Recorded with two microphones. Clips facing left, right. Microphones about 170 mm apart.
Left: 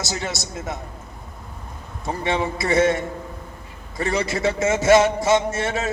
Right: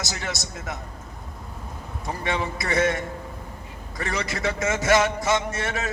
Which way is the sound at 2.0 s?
25° left (ahead or behind).